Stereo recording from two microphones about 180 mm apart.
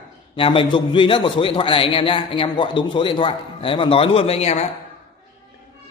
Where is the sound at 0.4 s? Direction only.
30° left (ahead or behind).